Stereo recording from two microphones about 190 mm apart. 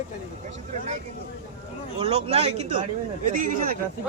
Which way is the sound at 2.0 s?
30° right (ahead or behind).